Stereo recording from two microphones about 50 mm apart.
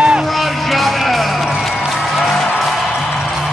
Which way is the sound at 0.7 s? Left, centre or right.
Centre.